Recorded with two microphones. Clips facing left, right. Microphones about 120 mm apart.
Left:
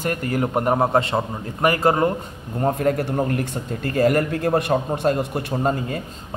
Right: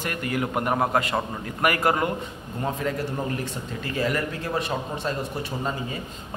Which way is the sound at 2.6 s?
50° left (ahead or behind).